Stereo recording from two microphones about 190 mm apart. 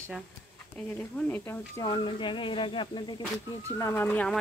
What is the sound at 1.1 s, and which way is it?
Speech, 10° left (ahead or behind).